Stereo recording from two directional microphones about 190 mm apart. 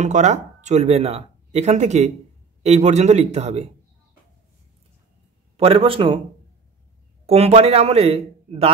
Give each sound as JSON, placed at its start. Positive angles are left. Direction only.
{"t": 0.0, "sound": "speech", "side_deg": -40}
{"t": 5.6, "sound": "speech", "side_deg": -30}
{"t": 7.2, "sound": "speech", "side_deg": -30}